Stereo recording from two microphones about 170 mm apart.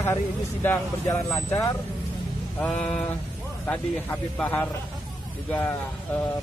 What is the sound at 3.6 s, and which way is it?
Speech, 10° left (ahead or behind).